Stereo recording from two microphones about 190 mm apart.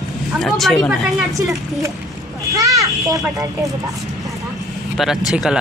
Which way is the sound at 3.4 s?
15° right (ahead or behind).